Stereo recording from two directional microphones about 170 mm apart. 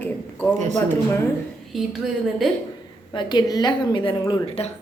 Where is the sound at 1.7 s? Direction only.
Centre (ahead or behind).